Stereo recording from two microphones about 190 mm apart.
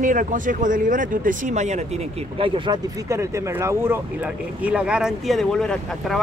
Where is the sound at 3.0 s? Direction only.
15° right (ahead or behind).